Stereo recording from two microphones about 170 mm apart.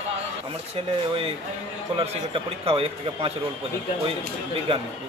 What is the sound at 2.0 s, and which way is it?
A man's voice, 35° right (ahead or behind).